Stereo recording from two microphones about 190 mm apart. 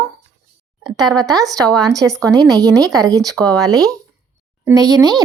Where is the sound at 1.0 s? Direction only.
20° right (ahead or behind).